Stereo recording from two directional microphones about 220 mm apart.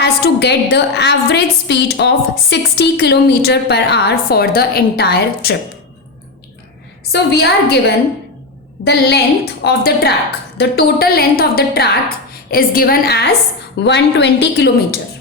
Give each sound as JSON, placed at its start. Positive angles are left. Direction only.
{"t": 0.0, "sound": "a woman's voice", "side_deg": 50}
{"t": 7.1, "sound": "a woman's voice", "side_deg": 50}